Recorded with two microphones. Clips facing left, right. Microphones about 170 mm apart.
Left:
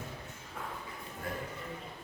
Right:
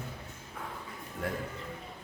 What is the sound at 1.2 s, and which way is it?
Speech, 90° right.